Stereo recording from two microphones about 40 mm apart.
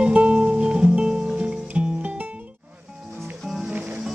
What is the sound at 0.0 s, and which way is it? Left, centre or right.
Music, right.